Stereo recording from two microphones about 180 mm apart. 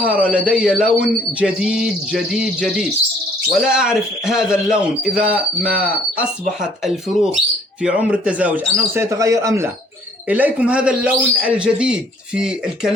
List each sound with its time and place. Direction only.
0.0 s a man's voice: 10° right (ahead or behind)
3.5 s a man's voice: 5° right (ahead or behind)